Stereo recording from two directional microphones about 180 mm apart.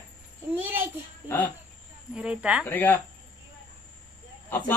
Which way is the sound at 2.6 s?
10° left (ahead or behind).